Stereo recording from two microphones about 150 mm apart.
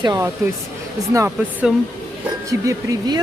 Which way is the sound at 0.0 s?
25° right (ahead or behind).